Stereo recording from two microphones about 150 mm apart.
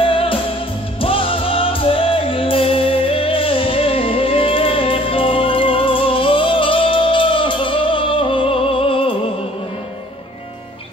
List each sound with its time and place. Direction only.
0.0 s music: 35° left (ahead or behind)